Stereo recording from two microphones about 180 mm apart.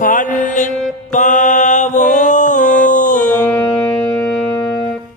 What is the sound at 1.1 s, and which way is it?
Mantra, 45° left (ahead or behind).